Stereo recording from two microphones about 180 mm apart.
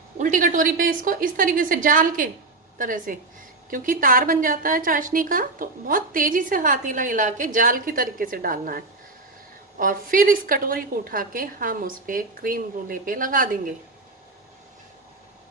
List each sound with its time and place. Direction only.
0.2 s a woman's voice: 45° right (ahead or behind)